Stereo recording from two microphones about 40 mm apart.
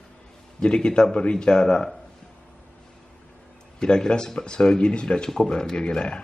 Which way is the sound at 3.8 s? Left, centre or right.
Centre.